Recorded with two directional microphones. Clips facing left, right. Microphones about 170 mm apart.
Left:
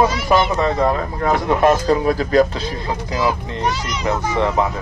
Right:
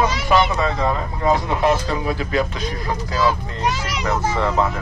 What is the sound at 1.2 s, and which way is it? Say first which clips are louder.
Speech: left 3 dB; 55° left (ahead or behind).